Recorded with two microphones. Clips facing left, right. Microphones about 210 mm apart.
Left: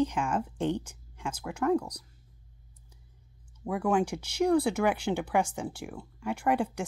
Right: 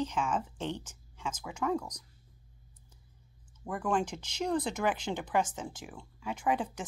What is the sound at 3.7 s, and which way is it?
A woman's voice, 10° left (ahead or behind).